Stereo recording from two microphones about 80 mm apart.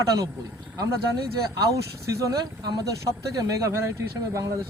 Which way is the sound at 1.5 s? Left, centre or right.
Right.